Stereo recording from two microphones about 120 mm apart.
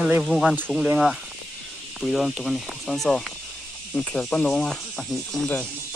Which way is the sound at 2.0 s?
Centre (ahead or behind).